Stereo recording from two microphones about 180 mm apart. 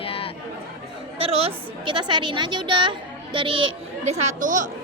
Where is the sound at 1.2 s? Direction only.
35° right (ahead or behind).